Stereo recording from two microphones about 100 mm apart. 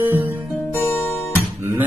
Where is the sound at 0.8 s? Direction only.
25° left (ahead or behind).